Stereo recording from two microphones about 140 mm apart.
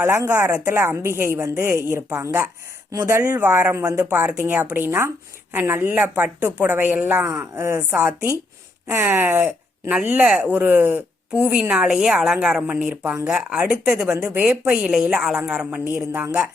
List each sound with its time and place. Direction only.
0.0 s speech: 15° right (ahead or behind)